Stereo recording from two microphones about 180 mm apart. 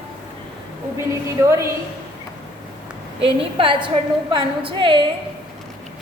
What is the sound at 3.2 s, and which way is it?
A woman's voice, 30° right (ahead or behind).